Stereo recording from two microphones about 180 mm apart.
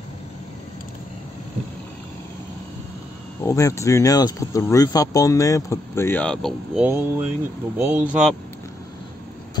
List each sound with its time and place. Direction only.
3.4 s speech: 15° left (ahead or behind); by 8.3 s 10° right (ahead or behind)